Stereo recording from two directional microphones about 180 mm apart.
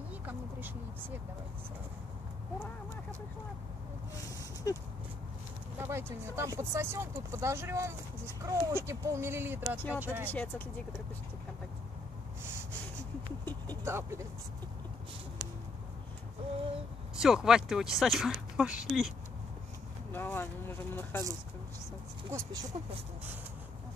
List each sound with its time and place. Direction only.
0.3 s a sound: 10° right (ahead or behind)
4.7 s speech: 20° left (ahead or behind)
5.8 s speech: 15° right (ahead or behind)
10.2 s speech: 10° left (ahead or behind)
13.8 s speech: 15° right (ahead or behind)
17.2 s speech: 5° right (ahead or behind)
20.1 s speech: 10° left (ahead or behind)
22.3 s speech: 20° right (ahead or behind)